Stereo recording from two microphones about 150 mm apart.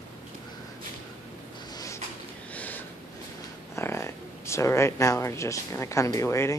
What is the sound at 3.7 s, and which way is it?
Speech, 20° left (ahead or behind).